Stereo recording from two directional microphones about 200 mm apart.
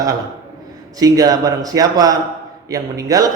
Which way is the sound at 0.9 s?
20° right (ahead or behind).